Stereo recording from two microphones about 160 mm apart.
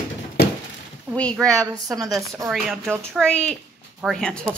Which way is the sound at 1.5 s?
20° right (ahead or behind).